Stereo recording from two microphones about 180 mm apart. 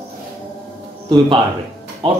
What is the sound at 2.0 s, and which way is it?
Speech, 30° right (ahead or behind).